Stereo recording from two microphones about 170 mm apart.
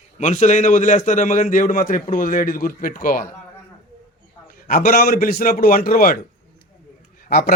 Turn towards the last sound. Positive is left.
turn(degrees=65)  # may be behind; listen again after turning